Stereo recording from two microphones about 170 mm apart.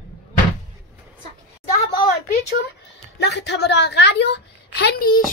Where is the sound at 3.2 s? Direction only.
85° left; by 5.1 s 65° left (ahead or behind).